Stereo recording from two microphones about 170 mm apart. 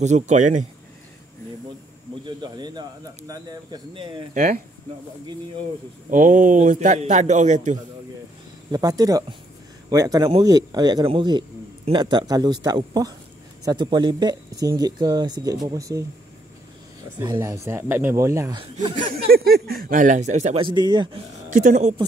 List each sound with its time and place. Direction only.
0.0 s a man's voice: 45° right (ahead or behind)
2.2 s a man's voice: 25° right (ahead or behind)
4.3 s a man's voice: 45° right (ahead or behind)
6.0 s a man's voice: 50° right (ahead or behind)
8.7 s a man's voice: 20° right (ahead or behind)
17.2 s speech: 20° right (ahead or behind)
18.6 s a man's voice: 30° right (ahead or behind)
19.3 s a man's voice: 65° right (ahead or behind); by 20.6 s 40° right (ahead or behind)
20.6 s a man's voice: 25° right (ahead or behind)
21.5 s speech: 50° right (ahead or behind)